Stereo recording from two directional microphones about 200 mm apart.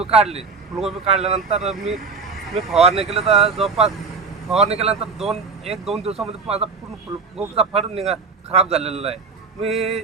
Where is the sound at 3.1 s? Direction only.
30° right (ahead or behind).